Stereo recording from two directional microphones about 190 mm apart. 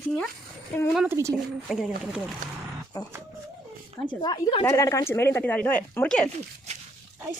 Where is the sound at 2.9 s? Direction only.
20° left (ahead or behind).